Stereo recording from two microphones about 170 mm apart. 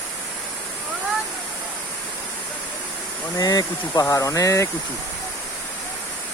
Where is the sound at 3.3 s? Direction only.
20° left (ahead or behind).